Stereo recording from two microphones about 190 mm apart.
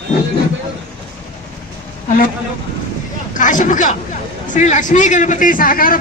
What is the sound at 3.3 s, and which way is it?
Speech, 45° left (ahead or behind).